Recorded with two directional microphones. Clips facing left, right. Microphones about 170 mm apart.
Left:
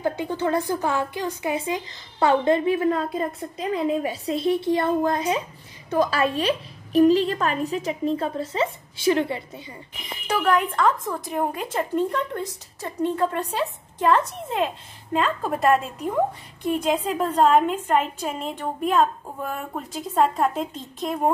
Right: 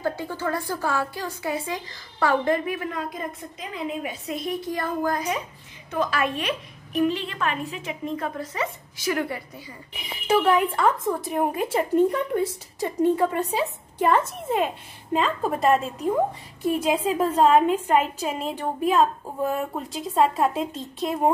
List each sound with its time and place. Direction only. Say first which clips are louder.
0.0 s a woman's voice: left 3 dB; 20° left (ahead or behind)
9.9 s a woman's voice: right 5 dB; 10° right (ahead or behind)